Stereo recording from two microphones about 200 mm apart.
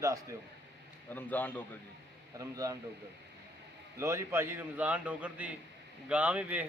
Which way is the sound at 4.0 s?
15° right (ahead or behind).